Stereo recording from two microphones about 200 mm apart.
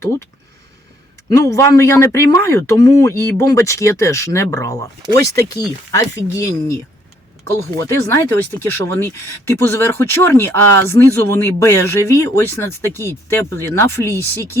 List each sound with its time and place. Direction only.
0.0 s speech: 15° left (ahead or behind)
1.4 s speech: 15° left (ahead or behind)